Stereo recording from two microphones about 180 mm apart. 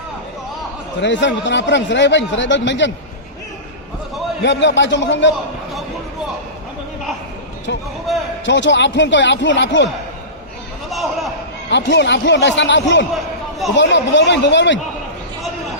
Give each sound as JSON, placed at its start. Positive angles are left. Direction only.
{"t": 1.0, "sound": "speech", "side_deg": 80}
{"t": 4.4, "sound": "speech", "side_deg": 85}
{"t": 7.7, "sound": "speech", "side_deg": 75}
{"t": 10.8, "sound": "a sound", "side_deg": 0}
{"t": 11.7, "sound": "speech", "side_deg": 75}